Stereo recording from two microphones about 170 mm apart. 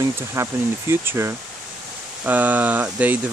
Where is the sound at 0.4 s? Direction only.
15° right (ahead or behind).